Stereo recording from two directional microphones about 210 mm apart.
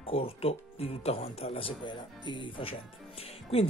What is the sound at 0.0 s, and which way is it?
Speech, 25° left (ahead or behind).